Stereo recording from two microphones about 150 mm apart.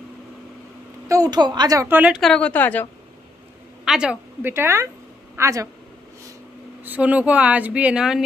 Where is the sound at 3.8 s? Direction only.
5° right (ahead or behind).